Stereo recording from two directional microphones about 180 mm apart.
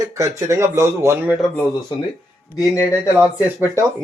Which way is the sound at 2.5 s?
20° left (ahead or behind).